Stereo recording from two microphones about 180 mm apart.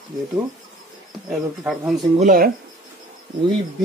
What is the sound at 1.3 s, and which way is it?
Speech, centre (ahead or behind).